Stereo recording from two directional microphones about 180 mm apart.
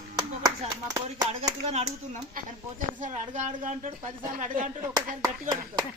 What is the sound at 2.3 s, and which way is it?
Speech, 45° right (ahead or behind).